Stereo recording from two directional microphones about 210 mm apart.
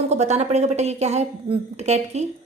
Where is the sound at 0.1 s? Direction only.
30° right (ahead or behind).